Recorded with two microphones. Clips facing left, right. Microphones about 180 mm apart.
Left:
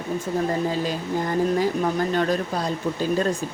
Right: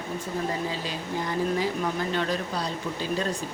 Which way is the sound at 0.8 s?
45° left (ahead or behind).